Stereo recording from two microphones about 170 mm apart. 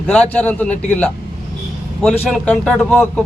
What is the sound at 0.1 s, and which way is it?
A man's voice, 10° left (ahead or behind).